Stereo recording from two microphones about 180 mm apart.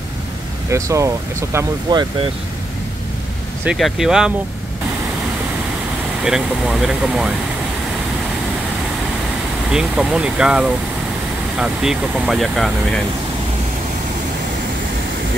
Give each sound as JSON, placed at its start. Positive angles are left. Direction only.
{"t": 0.7, "sound": "speech", "side_deg": -15}
{"t": 3.6, "sound": "speech", "side_deg": 0}
{"t": 6.2, "sound": "speech", "side_deg": -5}
{"t": 9.7, "sound": "speech", "side_deg": -5}